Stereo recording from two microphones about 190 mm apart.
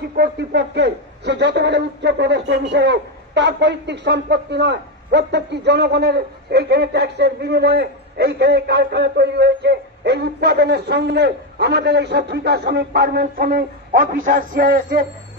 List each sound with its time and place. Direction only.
0.1 s a man's voice: 60° right (ahead or behind)